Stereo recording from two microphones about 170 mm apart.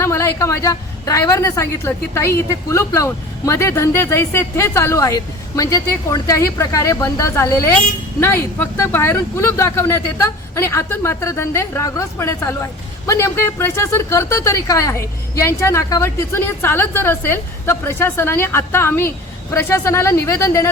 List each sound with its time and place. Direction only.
0.0 s a woman's voice: 15° left (ahead or behind)